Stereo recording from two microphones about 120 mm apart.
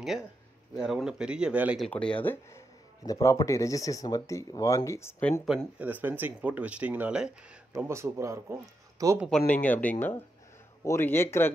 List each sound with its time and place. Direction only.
0.7 s speech: 5° right (ahead or behind)
1.9 s speech: 10° left (ahead or behind)
3.1 s speech: 25° left (ahead or behind)
5.4 s speech: centre (ahead or behind)
5.8 s speech: 15° right (ahead or behind)
7.7 s speech: 25° right (ahead or behind)
9.3 s speech: 10° left (ahead or behind)